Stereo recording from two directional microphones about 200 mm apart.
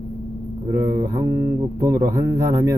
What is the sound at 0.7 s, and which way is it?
Speech, 15° right (ahead or behind).